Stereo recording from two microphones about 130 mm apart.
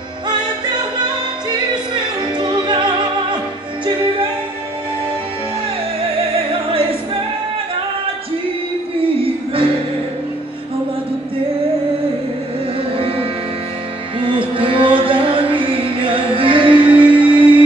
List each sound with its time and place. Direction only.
0.3 s music: 35° right (ahead or behind)
6.7 s music: 45° right (ahead or behind)
9.0 s music: 40° right (ahead or behind)
12.9 s music: 45° right (ahead or behind)
14.6 s music: 40° right (ahead or behind)